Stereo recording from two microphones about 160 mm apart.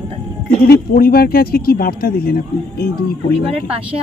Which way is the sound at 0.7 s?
70° left (ahead or behind).